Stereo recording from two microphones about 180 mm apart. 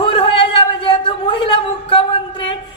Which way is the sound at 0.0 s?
30° left (ahead or behind).